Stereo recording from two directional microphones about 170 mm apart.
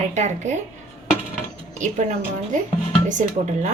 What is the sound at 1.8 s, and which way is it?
A woman's voice, 45° right (ahead or behind).